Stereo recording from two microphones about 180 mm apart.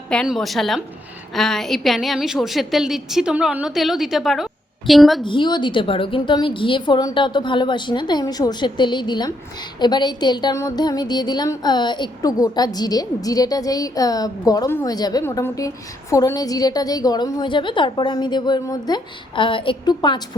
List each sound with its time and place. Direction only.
0.1 s a woman's voice: 5° left (ahead or behind)
5.2 s a woman's voice: 25° left (ahead or behind)